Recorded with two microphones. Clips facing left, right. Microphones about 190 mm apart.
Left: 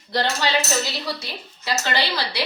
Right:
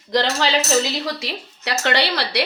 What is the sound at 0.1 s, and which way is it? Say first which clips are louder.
Speech: right 3 dB; 90° right.